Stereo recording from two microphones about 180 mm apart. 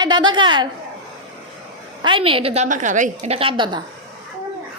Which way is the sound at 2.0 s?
30° right (ahead or behind).